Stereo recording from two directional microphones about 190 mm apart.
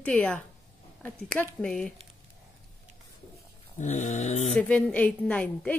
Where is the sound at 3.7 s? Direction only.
40° left (ahead or behind).